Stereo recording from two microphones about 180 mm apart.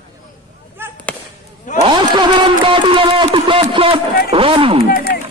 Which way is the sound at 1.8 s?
30° right (ahead or behind).